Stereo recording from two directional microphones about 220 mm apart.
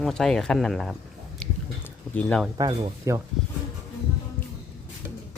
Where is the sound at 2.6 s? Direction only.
20° right (ahead or behind).